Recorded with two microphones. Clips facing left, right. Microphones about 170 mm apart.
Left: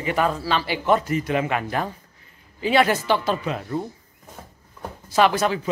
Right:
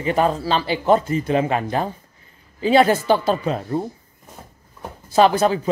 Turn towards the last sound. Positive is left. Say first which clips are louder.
# right 4 dB
turn(degrees=-30)  # may be behind; listen again after turning